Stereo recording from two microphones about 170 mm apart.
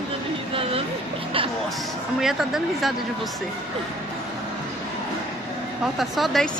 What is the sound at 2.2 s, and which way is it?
Speech, centre (ahead or behind).